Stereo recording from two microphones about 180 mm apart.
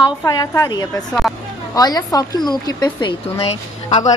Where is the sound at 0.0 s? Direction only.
20° left (ahead or behind).